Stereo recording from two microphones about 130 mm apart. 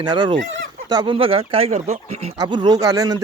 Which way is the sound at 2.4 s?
35° right (ahead or behind).